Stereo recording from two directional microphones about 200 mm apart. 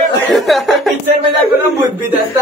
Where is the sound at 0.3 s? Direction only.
Centre (ahead or behind).